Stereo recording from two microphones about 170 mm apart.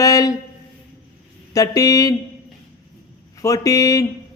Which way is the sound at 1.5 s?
20° left (ahead or behind).